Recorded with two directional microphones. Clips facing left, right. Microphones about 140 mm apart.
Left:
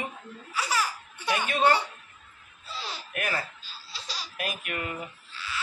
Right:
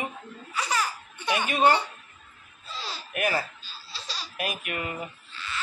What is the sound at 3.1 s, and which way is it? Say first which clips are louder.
Speech: right 5 dB; 10° right (ahead or behind).